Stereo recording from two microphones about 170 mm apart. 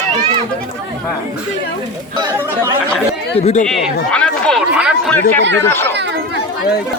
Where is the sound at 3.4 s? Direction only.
45° left (ahead or behind).